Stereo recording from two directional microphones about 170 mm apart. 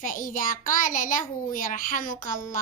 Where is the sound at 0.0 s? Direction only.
50° left (ahead or behind).